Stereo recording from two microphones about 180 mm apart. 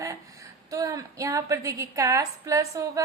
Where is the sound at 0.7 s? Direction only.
20° right (ahead or behind).